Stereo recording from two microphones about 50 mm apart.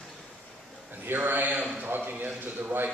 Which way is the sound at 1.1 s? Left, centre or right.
Right.